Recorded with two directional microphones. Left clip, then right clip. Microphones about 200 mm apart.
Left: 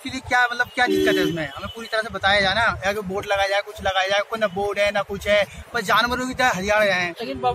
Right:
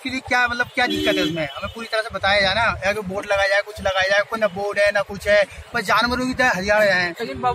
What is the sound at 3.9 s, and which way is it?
A man's voice, 5° left (ahead or behind).